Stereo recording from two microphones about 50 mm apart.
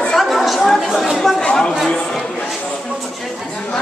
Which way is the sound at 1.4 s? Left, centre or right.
Centre.